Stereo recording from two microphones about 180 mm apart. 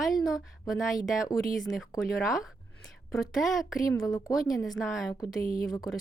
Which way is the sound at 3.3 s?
Centre (ahead or behind).